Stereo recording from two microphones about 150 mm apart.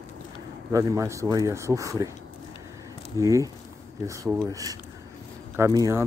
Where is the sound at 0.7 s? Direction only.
20° right (ahead or behind).